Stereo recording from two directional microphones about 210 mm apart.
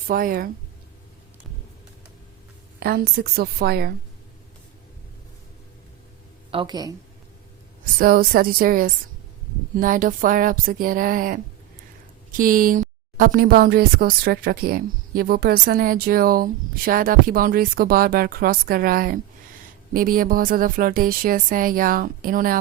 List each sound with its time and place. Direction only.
0.1 s speech: 45° right (ahead or behind)
2.8 s speech: 50° right (ahead or behind)
6.5 s speech: 20° right (ahead or behind)
7.9 s speech: 45° right (ahead or behind)
12.4 s speech: 40° right (ahead or behind)